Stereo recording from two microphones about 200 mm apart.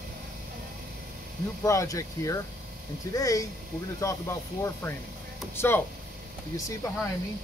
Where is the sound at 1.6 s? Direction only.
15° left (ahead or behind).